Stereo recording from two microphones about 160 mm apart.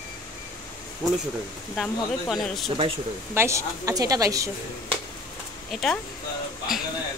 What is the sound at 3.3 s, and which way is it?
A woman's voice, 15° right (ahead or behind).